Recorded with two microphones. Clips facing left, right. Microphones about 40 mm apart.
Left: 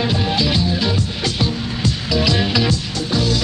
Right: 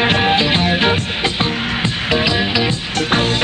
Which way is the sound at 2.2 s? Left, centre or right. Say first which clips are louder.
Left 2 dB; centre.